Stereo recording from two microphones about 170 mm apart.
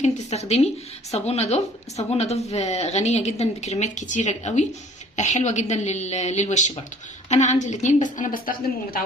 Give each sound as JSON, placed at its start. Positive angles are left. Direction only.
{"t": 0.0, "sound": "a woman's voice", "side_deg": 40}